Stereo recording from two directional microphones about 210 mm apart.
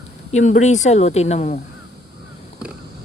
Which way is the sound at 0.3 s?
35° left (ahead or behind).